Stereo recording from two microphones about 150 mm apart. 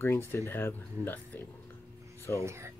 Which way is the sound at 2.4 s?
20° right (ahead or behind).